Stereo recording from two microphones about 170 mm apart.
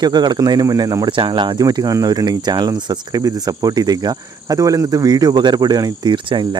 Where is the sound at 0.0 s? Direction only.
25° right (ahead or behind).